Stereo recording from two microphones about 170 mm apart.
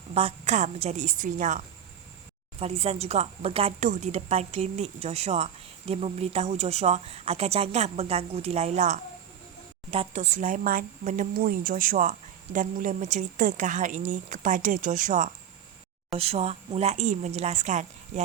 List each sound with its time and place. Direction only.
0.1 s speech: 35° right (ahead or behind)
3.8 s speech: 50° right (ahead or behind)
11.3 s speech: 55° right (ahead or behind)
16.1 s speech: 35° right (ahead or behind)